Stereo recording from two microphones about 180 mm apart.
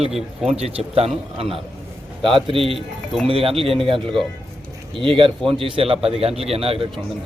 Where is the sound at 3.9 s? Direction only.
Centre (ahead or behind).